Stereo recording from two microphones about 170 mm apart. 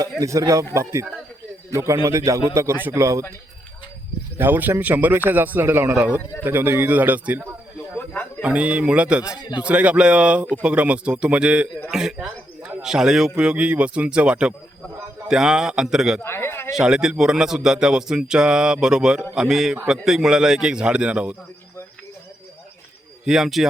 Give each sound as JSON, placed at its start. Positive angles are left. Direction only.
{"t": 0.2, "sound": "speech", "side_deg": -20}
{"t": 4.4, "sound": "speech", "side_deg": -10}
{"t": 7.9, "sound": "a sound", "side_deg": 10}
{"t": 8.4, "sound": "speech", "side_deg": -5}
{"t": 16.2, "sound": "a sound", "side_deg": 15}
{"t": 16.7, "sound": "speech", "side_deg": -5}
{"t": 23.2, "sound": "speech", "side_deg": -5}